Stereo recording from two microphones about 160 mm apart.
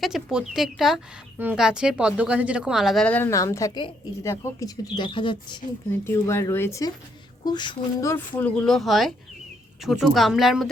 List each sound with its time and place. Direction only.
0.0 s speech: 5° right (ahead or behind); by 4.7 s 20° left (ahead or behind)
4.9 s speech: 30° left (ahead or behind)
5.9 s speech: 15° left (ahead or behind)
8.1 s speech: 10° left (ahead or behind)